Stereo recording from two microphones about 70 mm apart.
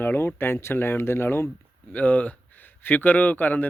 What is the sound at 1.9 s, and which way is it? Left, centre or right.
Speech, centre.